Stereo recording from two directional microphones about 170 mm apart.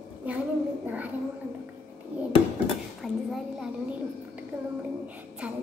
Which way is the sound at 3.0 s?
Centre (ahead or behind).